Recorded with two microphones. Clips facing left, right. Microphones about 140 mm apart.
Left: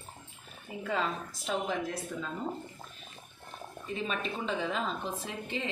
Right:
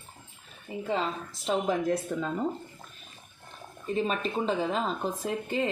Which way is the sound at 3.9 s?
40° right (ahead or behind).